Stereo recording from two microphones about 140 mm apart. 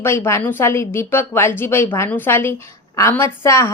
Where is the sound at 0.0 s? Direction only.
15° left (ahead or behind).